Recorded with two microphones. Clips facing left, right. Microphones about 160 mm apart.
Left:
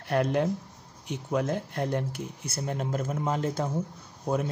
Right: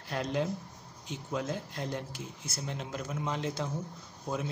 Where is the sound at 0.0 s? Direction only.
60° left (ahead or behind).